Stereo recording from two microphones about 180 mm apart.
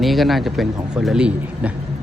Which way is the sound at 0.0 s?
Centre (ahead or behind).